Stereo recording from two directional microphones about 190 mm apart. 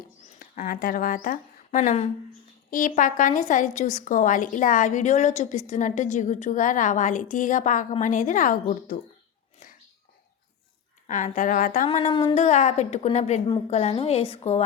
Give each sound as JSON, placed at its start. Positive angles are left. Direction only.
{"t": 0.3, "sound": "a woman's voice", "side_deg": 40}
{"t": 11.0, "sound": "a woman's voice", "side_deg": 40}
{"t": 11.9, "sound": "a woman's voice", "side_deg": 30}